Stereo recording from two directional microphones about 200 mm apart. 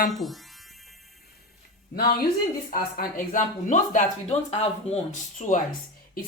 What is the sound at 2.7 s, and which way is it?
Speech, 45° left (ahead or behind).